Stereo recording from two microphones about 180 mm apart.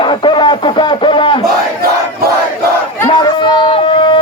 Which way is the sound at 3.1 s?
25° left (ahead or behind).